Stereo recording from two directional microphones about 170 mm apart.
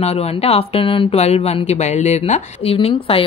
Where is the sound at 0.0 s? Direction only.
35° left (ahead or behind).